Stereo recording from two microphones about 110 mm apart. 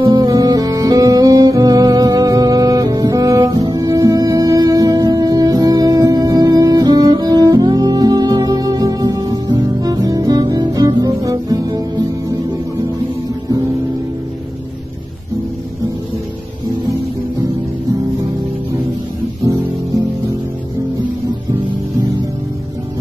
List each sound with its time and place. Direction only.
0.1 s music: 35° right (ahead or behind)